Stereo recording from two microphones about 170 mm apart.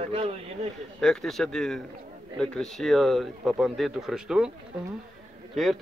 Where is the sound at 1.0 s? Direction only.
Centre (ahead or behind).